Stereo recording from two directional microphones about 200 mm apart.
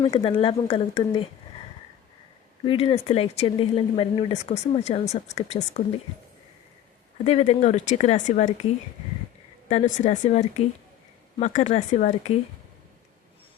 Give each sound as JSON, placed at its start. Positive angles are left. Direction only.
{"t": 0.0, "sound": "speech", "side_deg": 30}
{"t": 2.6, "sound": "speech", "side_deg": 30}
{"t": 7.3, "sound": "speech", "side_deg": 30}
{"t": 9.6, "sound": "speech", "side_deg": 35}